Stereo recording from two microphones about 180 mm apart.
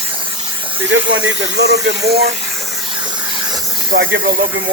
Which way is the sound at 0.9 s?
90° right.